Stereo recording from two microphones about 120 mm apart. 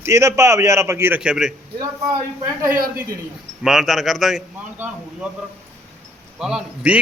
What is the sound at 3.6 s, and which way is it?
Speech, centre (ahead or behind).